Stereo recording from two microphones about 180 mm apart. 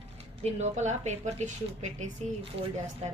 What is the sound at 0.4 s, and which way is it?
Speech, 40° right (ahead or behind).